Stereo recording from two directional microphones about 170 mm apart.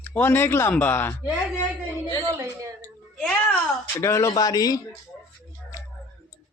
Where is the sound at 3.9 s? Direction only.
20° left (ahead or behind).